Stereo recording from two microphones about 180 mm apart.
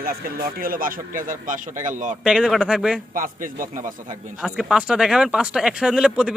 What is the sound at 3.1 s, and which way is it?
Speech, 50° right (ahead or behind).